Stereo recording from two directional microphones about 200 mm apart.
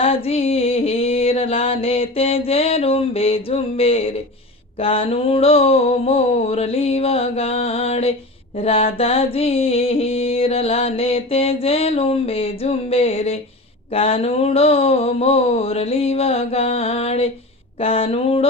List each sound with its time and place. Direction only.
0.0 s music: 30° left (ahead or behind)
4.8 s mantra: 30° left (ahead or behind)